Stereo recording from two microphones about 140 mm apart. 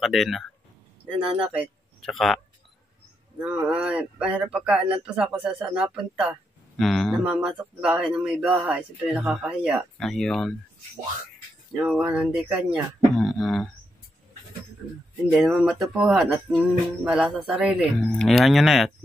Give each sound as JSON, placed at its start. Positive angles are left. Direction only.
{"t": 0.0, "sound": "speech", "side_deg": 0}
{"t": 2.0, "sound": "speech", "side_deg": 0}
{"t": 3.3, "sound": "speech", "side_deg": -10}
{"t": 8.5, "sound": "speech", "side_deg": -20}
{"t": 8.7, "sound": "speech", "side_deg": -5}
{"t": 11.7, "sound": "speech", "side_deg": -10}
{"t": 15.3, "sound": "speech", "side_deg": -5}